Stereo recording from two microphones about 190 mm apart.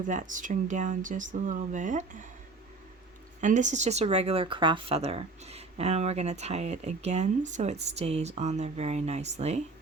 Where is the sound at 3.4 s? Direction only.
40° right (ahead or behind).